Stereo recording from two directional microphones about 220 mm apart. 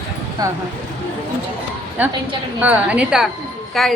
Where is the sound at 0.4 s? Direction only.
15° right (ahead or behind).